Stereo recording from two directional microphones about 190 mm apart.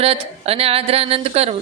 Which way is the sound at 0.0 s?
30° right (ahead or behind).